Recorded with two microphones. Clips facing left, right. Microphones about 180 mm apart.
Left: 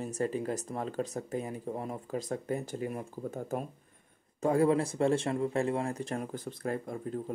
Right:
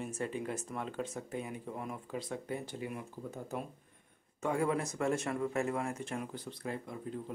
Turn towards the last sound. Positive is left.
turn(degrees=50)  # may be behind; listen again after turning